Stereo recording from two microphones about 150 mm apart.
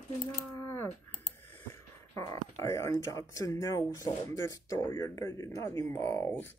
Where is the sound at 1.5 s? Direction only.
20° left (ahead or behind).